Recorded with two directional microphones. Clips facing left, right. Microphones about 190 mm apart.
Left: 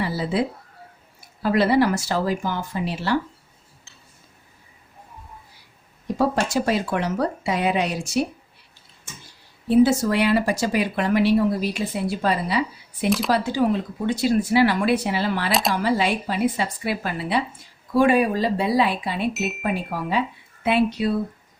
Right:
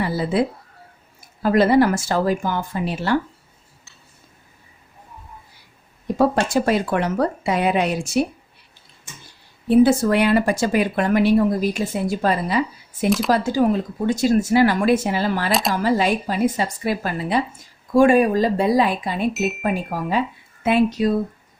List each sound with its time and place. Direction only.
0.0 s speech: 50° right (ahead or behind)
6.1 s speech: 55° right (ahead or behind)
9.6 s speech: 55° right (ahead or behind)
13.1 s speech: centre (ahead or behind)
13.3 s speech: 45° right (ahead or behind)